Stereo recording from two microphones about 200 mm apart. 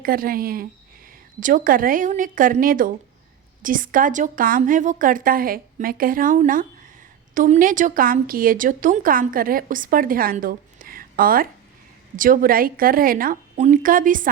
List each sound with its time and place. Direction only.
0.0 s speech: 45° right (ahead or behind)